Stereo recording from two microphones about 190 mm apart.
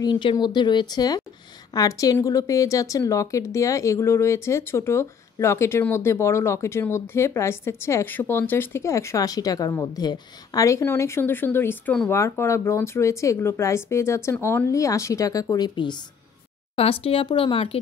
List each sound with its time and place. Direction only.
0.0 s a woman's voice: 25° left (ahead or behind)